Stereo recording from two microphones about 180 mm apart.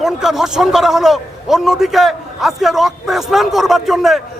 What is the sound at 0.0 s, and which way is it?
A man's voice, centre (ahead or behind).